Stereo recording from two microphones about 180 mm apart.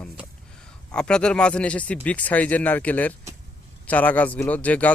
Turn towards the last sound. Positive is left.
turn(degrees=10)  # may be behind; listen again after turning